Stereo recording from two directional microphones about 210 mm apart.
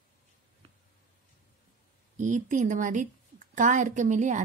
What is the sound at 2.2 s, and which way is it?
A woman's voice, 40° right (ahead or behind).